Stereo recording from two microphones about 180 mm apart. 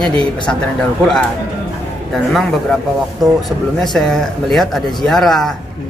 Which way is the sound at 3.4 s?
Centre (ahead or behind).